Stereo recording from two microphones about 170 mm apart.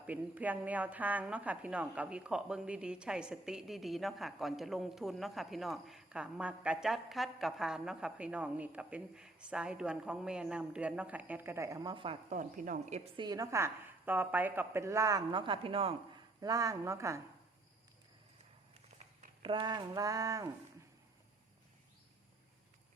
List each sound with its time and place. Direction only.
0.0 s a woman's voice: 10° right (ahead or behind); by 12.1 s 25° right (ahead or behind)
12.3 s speech: 50° right (ahead or behind)
13.1 s a woman's voice: 25° right (ahead or behind)
16.4 s a woman's voice: 20° right (ahead or behind)
19.4 s a woman's voice: 30° right (ahead or behind)